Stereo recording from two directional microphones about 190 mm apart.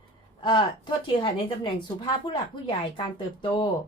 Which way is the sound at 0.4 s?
25° left (ahead or behind).